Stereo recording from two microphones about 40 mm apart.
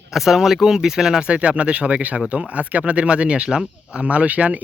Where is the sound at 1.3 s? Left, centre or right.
Right.